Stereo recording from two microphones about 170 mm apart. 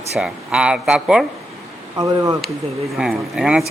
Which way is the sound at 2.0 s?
20° right (ahead or behind).